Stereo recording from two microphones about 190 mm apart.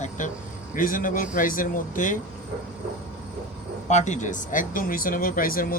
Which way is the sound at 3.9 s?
40° left (ahead or behind).